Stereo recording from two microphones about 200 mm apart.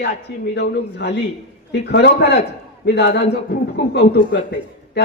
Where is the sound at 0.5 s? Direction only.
55° left (ahead or behind).